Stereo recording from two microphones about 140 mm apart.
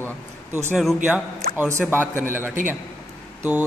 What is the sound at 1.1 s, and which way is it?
Speech, 10° right (ahead or behind).